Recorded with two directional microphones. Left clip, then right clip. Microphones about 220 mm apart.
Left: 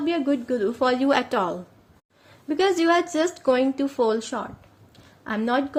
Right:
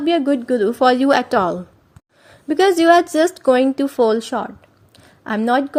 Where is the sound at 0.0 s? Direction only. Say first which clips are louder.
Right 7 dB; 35° right (ahead or behind).